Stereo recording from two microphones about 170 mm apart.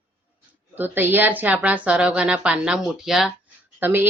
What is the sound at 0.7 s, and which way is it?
Speech, 10° right (ahead or behind).